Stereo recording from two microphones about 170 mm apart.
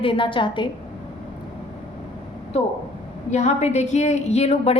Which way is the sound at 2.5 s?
40° left (ahead or behind).